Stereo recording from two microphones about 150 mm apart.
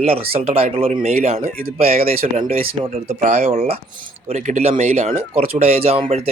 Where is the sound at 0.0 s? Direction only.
40° right (ahead or behind).